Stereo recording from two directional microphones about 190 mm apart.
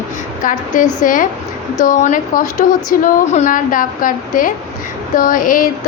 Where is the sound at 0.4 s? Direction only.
45° left (ahead or behind).